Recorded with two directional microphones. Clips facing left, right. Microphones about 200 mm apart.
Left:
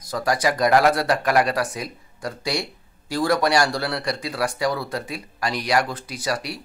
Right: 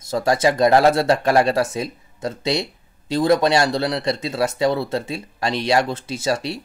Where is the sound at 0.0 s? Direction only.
25° right (ahead or behind).